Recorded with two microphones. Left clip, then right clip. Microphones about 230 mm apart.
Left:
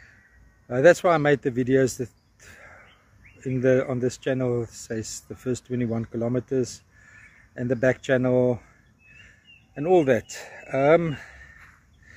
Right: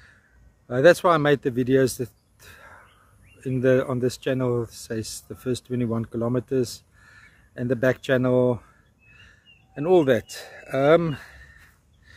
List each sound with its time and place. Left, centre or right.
0.7 s speech: centre
5.5 s speech: centre
7.5 s speech: centre
9.8 s speech: centre